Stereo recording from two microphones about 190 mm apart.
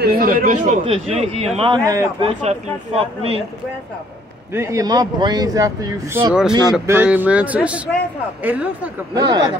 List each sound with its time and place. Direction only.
0.0 s speech: 50° right (ahead or behind)
0.8 s speech: 30° right (ahead or behind)
1.9 s a man's voice: 20° right (ahead or behind)
2.2 s speech: 30° right (ahead or behind)
4.5 s speech: 15° right (ahead or behind)
9.1 s a man's voice: 20° right (ahead or behind)